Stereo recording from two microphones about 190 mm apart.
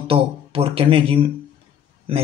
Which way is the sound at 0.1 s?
30° right (ahead or behind).